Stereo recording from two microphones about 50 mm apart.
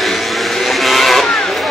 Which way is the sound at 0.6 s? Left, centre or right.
Centre.